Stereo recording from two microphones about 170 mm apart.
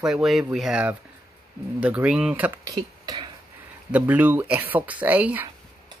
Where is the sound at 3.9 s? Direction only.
10° right (ahead or behind).